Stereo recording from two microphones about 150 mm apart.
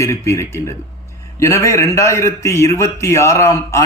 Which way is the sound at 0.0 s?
20° left (ahead or behind).